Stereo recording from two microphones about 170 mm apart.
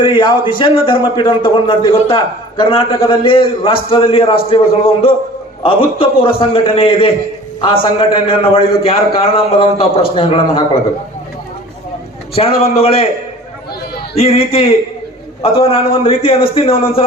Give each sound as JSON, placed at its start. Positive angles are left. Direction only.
{"t": 0.0, "sound": "a man's voice", "side_deg": 30}
{"t": 5.6, "sound": "a man's voice", "side_deg": 30}
{"t": 12.3, "sound": "a man's voice", "side_deg": 35}
{"t": 14.2, "sound": "a man's voice", "side_deg": 35}